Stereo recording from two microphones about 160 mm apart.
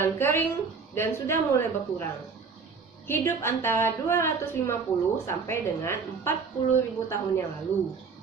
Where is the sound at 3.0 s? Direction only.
15° left (ahead or behind).